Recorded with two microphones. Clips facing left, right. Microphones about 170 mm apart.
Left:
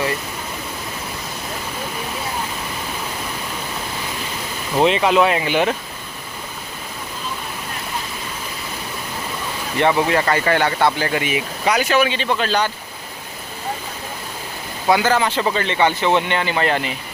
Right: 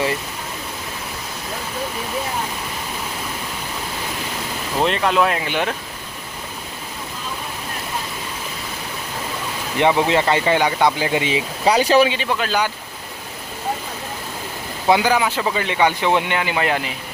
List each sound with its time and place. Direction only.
4.8 s speech: centre (ahead or behind)
9.7 s speech: 15° right (ahead or behind); by 12.0 s 30° right (ahead or behind)
12.0 s speech: 10° right (ahead or behind)
14.8 s speech: 15° right (ahead or behind)